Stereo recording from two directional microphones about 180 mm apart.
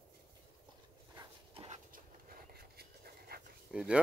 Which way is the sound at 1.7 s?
50° right (ahead or behind).